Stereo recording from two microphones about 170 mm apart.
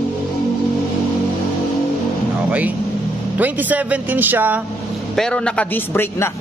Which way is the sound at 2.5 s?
10° right (ahead or behind).